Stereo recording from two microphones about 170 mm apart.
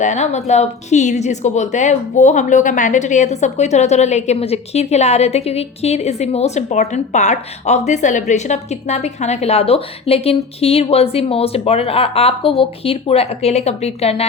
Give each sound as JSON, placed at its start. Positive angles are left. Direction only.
{"t": 0.0, "sound": "a woman's voice", "side_deg": 45}